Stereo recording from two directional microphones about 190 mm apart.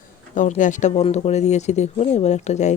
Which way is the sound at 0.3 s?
40° left (ahead or behind).